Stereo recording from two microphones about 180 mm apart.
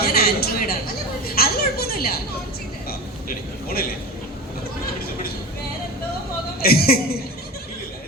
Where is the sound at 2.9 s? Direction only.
55° left (ahead or behind).